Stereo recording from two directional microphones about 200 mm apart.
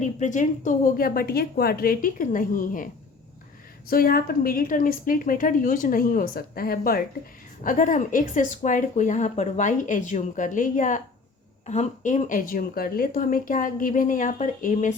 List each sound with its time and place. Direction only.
0.0 s a woman's voice: 40° left (ahead or behind)
3.8 s a woman's voice: 45° left (ahead or behind)